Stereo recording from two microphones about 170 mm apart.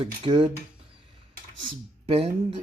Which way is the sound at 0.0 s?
30° right (ahead or behind).